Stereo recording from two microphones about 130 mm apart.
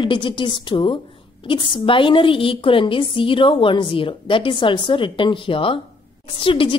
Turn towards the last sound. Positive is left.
turn(degrees=45)  # may be behind; listen again after turning